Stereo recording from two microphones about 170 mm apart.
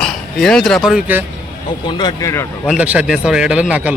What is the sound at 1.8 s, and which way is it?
Speech, 25° left (ahead or behind).